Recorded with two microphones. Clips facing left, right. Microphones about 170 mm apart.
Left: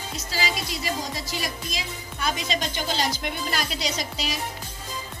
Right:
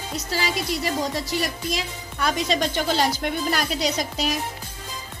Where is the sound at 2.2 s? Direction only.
60° right (ahead or behind).